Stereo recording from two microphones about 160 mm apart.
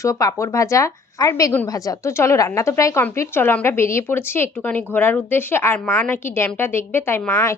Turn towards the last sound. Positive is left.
turn(degrees=15)  # may be behind; listen again after turning